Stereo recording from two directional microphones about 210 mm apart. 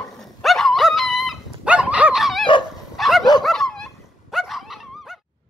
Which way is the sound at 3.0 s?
Centre (ahead or behind).